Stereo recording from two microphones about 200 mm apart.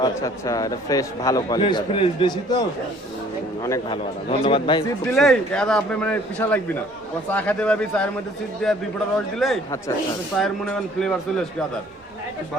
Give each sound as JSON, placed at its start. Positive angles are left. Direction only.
{"t": 0.0, "sound": "a man's voice", "side_deg": 15}
{"t": 3.9, "sound": "a man's voice", "side_deg": 25}
{"t": 5.1, "sound": "a man's voice", "side_deg": 0}